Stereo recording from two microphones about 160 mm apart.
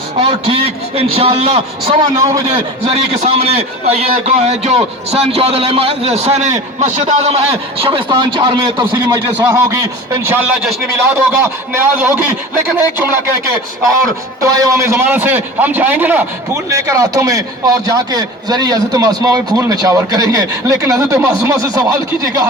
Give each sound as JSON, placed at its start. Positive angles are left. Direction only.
{"t": 0.2, "sound": "a man's voice", "side_deg": -35}
{"t": 2.1, "sound": "a man's voice", "side_deg": -20}
{"t": 2.8, "sound": "a man's voice", "side_deg": -40}
{"t": 14.4, "sound": "a man's voice", "side_deg": -20}